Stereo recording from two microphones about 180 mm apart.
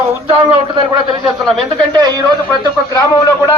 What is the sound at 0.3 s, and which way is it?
Speech, 30° right (ahead or behind).